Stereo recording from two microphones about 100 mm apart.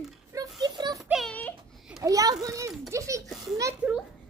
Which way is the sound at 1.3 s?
20° left (ahead or behind).